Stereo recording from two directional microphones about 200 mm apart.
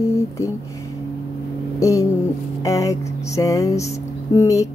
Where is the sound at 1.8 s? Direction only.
15° left (ahead or behind).